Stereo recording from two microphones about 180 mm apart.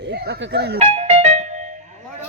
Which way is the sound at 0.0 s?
65° right (ahead or behind).